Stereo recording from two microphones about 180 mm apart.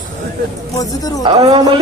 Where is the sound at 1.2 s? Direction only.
25° right (ahead or behind).